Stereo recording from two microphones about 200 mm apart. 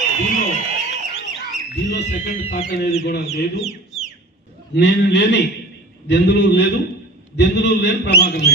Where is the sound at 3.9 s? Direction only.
Centre (ahead or behind).